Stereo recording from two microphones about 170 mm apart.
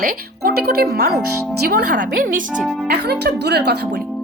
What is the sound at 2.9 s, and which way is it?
Speech, 70° right (ahead or behind).